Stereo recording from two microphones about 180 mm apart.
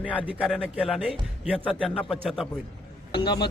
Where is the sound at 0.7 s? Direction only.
5° right (ahead or behind).